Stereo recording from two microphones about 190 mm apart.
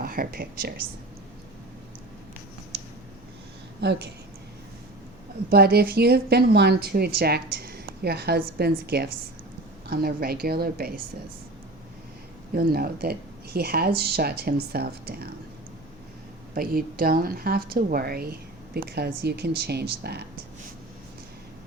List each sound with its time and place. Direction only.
0.0 s speech: 50° right (ahead or behind)
3.8 s a woman's voice: 60° right (ahead or behind)
5.5 s a woman's voice: 55° right (ahead or behind)
12.5 s a woman's voice: 55° right (ahead or behind)
16.6 s speech: 50° right (ahead or behind)